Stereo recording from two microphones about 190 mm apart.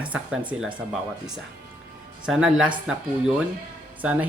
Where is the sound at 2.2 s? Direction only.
5° right (ahead or behind).